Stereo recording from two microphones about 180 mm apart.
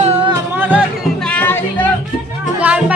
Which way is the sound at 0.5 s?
10° right (ahead or behind).